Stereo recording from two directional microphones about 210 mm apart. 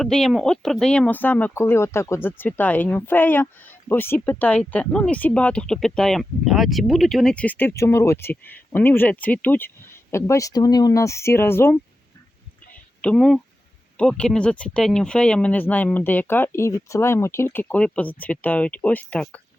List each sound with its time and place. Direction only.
0.0 s speech: centre (ahead or behind)
13.0 s speech: 5° left (ahead or behind)